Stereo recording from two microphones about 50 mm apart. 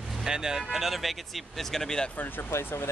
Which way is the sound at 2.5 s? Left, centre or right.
Left.